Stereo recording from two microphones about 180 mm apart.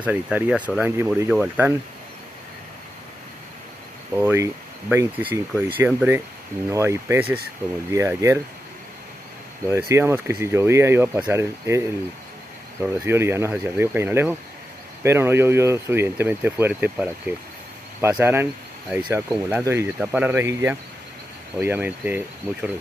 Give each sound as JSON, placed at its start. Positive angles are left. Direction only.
{"t": 0.0, "sound": "speech", "side_deg": -5}
{"t": 4.2, "sound": "speech", "side_deg": -10}
{"t": 9.7, "sound": "speech", "side_deg": -15}
{"t": 12.8, "sound": "speech", "side_deg": -15}